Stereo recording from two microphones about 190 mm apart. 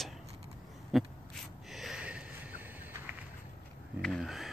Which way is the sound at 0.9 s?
Centre (ahead or behind).